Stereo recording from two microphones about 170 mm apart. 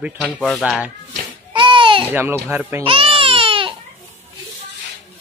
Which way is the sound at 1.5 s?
30° right (ahead or behind).